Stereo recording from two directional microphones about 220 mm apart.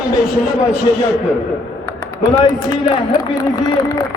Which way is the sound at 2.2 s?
15° left (ahead or behind).